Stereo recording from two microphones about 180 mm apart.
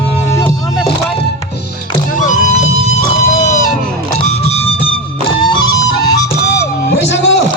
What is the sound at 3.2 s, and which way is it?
Music, 45° left (ahead or behind).